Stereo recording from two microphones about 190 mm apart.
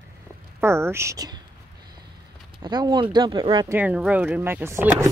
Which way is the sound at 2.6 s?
25° right (ahead or behind).